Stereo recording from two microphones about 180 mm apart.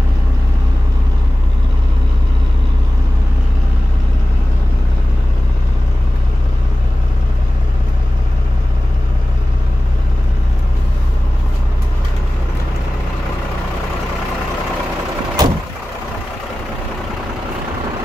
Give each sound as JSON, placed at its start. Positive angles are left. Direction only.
{"t": 15.4, "sound": "vehicle", "side_deg": -20}